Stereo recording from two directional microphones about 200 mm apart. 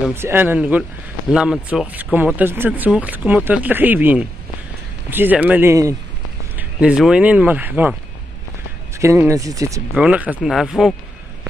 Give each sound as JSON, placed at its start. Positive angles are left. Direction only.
{"t": 0.0, "sound": "speech", "side_deg": -10}
{"t": 8.9, "sound": "speech", "side_deg": -15}